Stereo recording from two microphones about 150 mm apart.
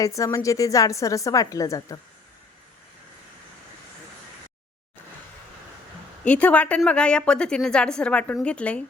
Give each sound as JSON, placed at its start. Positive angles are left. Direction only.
{"t": 0.0, "sound": "a woman's voice", "side_deg": 20}
{"t": 6.2, "sound": "a woman's voice", "side_deg": 10}